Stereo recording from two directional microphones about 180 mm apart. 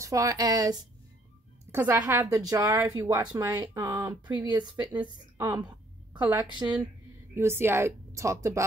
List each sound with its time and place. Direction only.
0.0 s a woman's voice: 20° right (ahead or behind)
1.7 s a woman's voice: 10° right (ahead or behind)
6.1 s a woman's voice: 10° right (ahead or behind)